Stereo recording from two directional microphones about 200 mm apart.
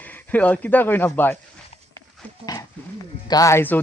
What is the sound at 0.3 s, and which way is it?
Speech, 10° left (ahead or behind).